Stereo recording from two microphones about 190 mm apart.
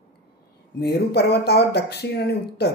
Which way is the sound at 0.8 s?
55° left (ahead or behind).